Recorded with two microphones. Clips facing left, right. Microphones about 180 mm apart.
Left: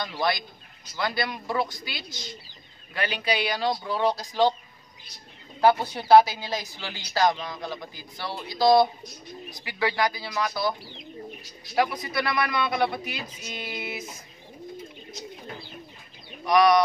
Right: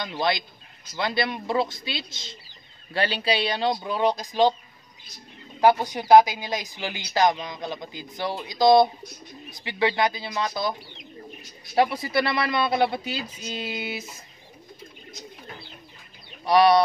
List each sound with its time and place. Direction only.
0.0 s a woman's voice: 20° right (ahead or behind)
5.6 s a woman's voice: 15° right (ahead or behind)
11.7 s speech: 30° right (ahead or behind)
16.4 s speech: 30° right (ahead or behind)